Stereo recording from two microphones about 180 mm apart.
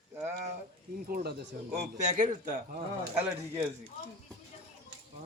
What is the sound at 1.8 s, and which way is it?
A man's voice, 40° right (ahead or behind).